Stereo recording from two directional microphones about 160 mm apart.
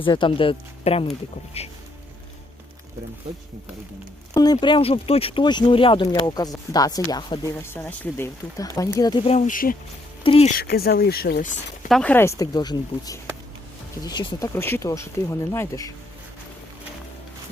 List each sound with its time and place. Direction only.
0.0 s speech: 30° left (ahead or behind)
4.5 s speech: 35° left (ahead or behind)
7.8 s speech: 10° left (ahead or behind)
8.5 s speech: 20° left (ahead or behind)
9.5 s speech: 60° left (ahead or behind)
10.2 s speech: 40° left (ahead or behind)
10.6 s speech: 75° left (ahead or behind)
11.9 s speech: 5° left (ahead or behind)
12.1 s speech: 20° left (ahead or behind)